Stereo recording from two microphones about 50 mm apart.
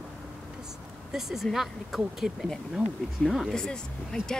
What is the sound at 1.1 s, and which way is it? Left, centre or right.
Speech, centre.